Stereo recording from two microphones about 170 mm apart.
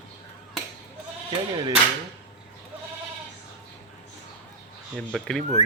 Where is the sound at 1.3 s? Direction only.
25° right (ahead or behind).